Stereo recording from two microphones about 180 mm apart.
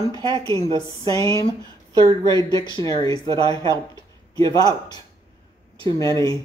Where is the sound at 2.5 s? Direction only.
20° left (ahead or behind).